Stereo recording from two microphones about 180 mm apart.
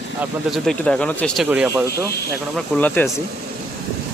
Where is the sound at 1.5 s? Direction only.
5° right (ahead or behind).